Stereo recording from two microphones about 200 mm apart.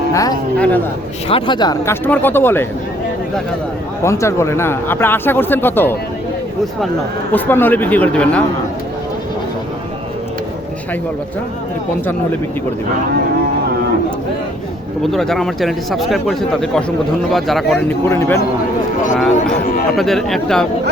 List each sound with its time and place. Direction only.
0.1 s speech: 15° left (ahead or behind)
4.0 s speech: 15° left (ahead or behind)
7.3 s speech: 10° left (ahead or behind)
15.0 s a man's voice: centre (ahead or behind)
19.1 s a man's voice: centre (ahead or behind)